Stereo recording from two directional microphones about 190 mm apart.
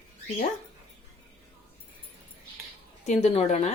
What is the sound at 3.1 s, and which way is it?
Speech, 35° left (ahead or behind).